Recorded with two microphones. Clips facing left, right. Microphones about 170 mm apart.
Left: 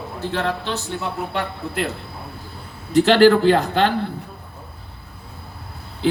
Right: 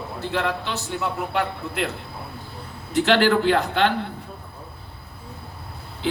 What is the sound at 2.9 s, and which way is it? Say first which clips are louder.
Speech: left 5 dB; 40° left (ahead or behind).